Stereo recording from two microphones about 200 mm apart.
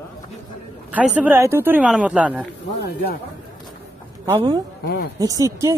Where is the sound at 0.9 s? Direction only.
5° right (ahead or behind).